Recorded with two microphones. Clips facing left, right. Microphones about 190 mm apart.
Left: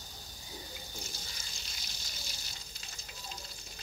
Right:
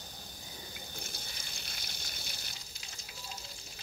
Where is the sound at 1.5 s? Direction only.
60° right (ahead or behind).